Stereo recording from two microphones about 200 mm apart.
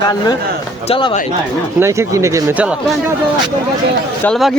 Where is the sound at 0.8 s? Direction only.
30° left (ahead or behind).